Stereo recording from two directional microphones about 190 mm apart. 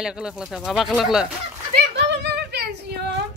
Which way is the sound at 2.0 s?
60° right (ahead or behind).